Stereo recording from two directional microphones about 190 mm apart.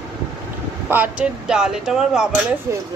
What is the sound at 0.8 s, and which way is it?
Speech, 10° right (ahead or behind).